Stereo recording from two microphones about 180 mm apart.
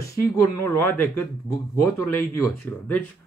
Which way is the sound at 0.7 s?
15° left (ahead or behind).